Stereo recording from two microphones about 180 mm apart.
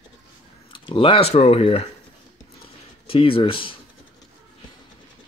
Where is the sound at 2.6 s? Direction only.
30° left (ahead or behind).